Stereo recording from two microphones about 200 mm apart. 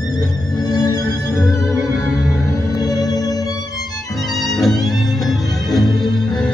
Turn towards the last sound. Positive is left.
turn(degrees=0)  # may be behind; listen again after turning